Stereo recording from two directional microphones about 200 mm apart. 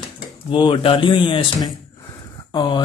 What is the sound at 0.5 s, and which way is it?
Speech, 25° left (ahead or behind).